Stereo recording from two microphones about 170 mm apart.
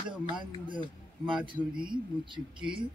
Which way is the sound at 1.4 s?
30° right (ahead or behind).